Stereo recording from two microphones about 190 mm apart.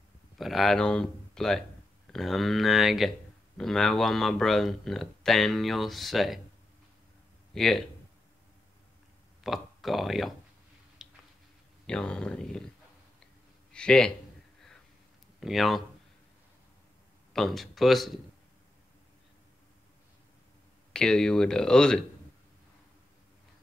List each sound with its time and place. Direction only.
0.4 s speech: centre (ahead or behind)
7.5 s speech: centre (ahead or behind)
9.4 s speech: centre (ahead or behind)
11.0 s a sound: centre (ahead or behind)
11.8 s speech: 5° left (ahead or behind)
13.7 s speech: 5° left (ahead or behind)
15.4 s speech: centre (ahead or behind)
17.3 s speech: centre (ahead or behind)
20.9 s speech: 5° left (ahead or behind)